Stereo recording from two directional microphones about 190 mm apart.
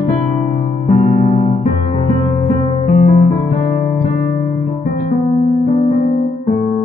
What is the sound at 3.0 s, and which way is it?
Music, 35° left (ahead or behind).